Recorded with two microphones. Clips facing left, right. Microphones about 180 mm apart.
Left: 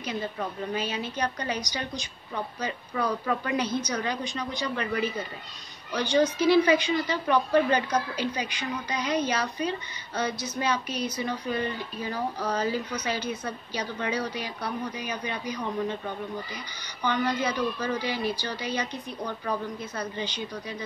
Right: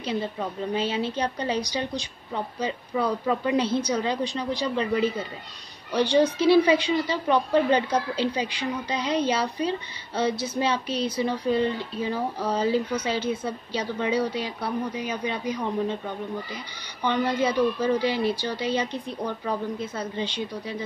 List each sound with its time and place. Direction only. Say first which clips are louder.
0.7 s a woman's voice: right 5 dB; 25° right (ahead or behind)